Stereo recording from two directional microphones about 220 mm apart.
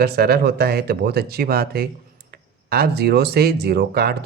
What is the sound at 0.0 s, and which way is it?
Speech, 45° right (ahead or behind).